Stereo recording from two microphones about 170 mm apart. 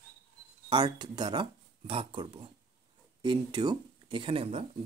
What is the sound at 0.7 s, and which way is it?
Speech, 25° right (ahead or behind).